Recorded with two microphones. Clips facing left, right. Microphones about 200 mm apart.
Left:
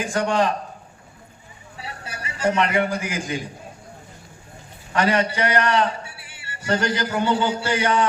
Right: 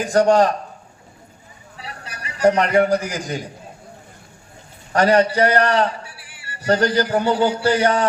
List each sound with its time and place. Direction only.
0.0 s a man's voice: 40° right (ahead or behind)
1.8 s a sound: 25° left (ahead or behind)
2.6 s a man's voice: 40° right (ahead or behind)
4.9 s a man's voice: 40° right (ahead or behind)
6.1 s music: 25° left (ahead or behind)
6.7 s a man's voice: 35° right (ahead or behind)
7.3 s speech: 25° left (ahead or behind)
7.7 s a man's voice: 35° right (ahead or behind)